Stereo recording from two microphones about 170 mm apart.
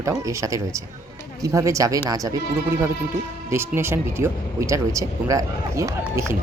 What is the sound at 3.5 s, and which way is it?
Speech, 15° right (ahead or behind).